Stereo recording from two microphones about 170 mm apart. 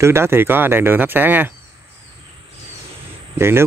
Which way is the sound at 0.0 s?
15° right (ahead or behind).